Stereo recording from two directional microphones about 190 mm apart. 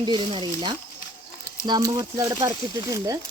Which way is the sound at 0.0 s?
25° right (ahead or behind).